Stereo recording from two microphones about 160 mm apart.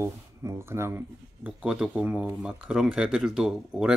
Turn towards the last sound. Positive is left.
turn(degrees=-5)  # may be behind; listen again after turning